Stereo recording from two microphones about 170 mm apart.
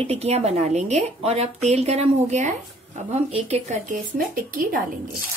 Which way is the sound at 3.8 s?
55° right (ahead or behind).